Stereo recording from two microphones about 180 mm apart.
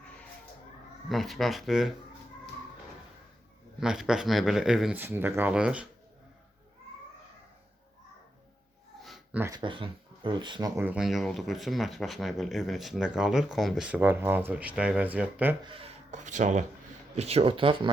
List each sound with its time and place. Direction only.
1.1 s speech: centre (ahead or behind)
3.8 s speech: 5° right (ahead or behind)
9.0 s a sound: centre (ahead or behind)
9.4 s speech: 20° right (ahead or behind)
10.8 s speech: 5° right (ahead or behind)
15.6 s speech: 30° right (ahead or behind)